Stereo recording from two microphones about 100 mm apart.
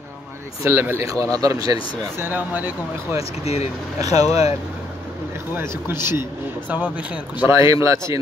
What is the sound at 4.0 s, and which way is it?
Speech, 40° right (ahead or behind).